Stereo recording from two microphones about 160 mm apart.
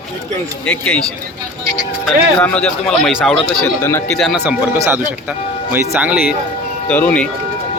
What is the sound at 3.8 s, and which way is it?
Speech, 15° left (ahead or behind).